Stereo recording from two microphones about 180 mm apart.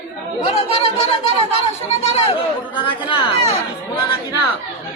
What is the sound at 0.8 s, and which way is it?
Speech, 35° left (ahead or behind).